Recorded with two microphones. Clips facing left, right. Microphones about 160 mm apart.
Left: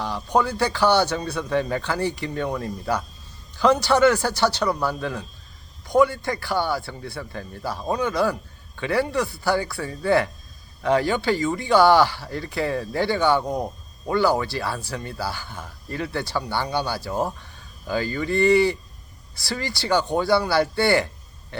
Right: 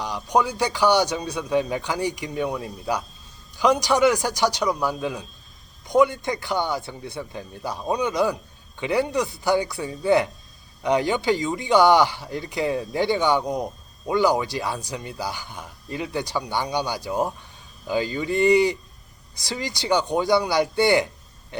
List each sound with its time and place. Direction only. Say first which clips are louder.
0.0 s speech: even; 15° right (ahead or behind)
21.5 s burping: right 2 dB; 15° right (ahead or behind)